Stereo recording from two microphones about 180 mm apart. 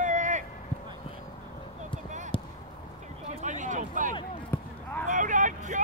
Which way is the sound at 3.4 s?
45° right (ahead or behind).